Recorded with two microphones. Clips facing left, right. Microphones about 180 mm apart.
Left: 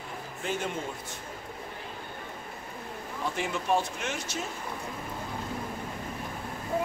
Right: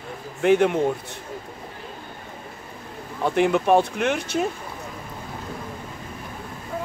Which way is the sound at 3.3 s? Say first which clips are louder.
Right 11 dB; 60° right (ahead or behind).